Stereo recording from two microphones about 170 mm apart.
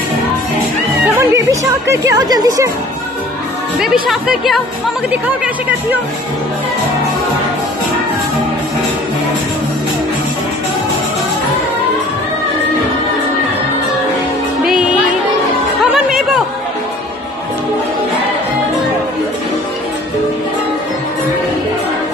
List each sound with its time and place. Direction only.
1.3 s a woman's voice: 20° right (ahead or behind)
3.8 s speech: 5° right (ahead or behind)
14.6 s music: centre (ahead or behind)